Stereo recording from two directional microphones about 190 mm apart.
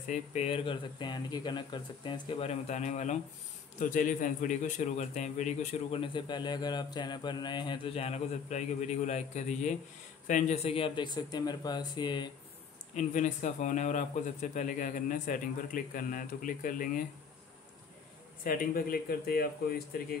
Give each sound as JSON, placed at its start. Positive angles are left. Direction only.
{"t": 0.1, "sound": "speech", "side_deg": 35}
{"t": 2.7, "sound": "a man's voice", "side_deg": 40}
{"t": 12.9, "sound": "speech", "side_deg": 40}
{"t": 18.4, "sound": "speech", "side_deg": 50}